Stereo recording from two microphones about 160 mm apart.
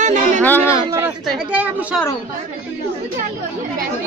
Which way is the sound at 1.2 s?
10° right (ahead or behind).